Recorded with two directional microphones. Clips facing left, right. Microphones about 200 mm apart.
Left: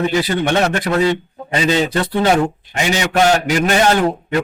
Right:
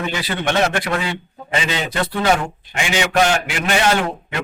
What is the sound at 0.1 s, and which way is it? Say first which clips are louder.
A man's voice: left 5 dB; 40° left (ahead or behind).